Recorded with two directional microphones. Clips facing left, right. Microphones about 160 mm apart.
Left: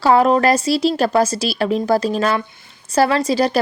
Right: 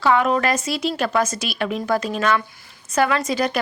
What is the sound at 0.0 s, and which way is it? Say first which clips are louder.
Speech: left 5 dB; 35° left (ahead or behind).